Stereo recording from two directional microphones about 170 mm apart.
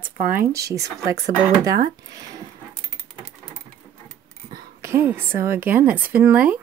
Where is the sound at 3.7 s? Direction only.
55° right (ahead or behind).